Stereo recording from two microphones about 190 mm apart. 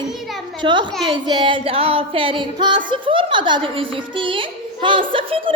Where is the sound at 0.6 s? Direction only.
25° right (ahead or behind).